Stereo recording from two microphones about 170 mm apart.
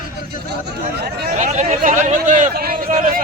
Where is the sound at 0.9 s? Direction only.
75° right (ahead or behind).